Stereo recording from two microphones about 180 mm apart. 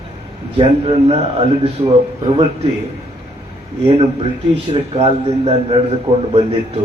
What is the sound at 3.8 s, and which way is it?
A man's voice, 35° right (ahead or behind).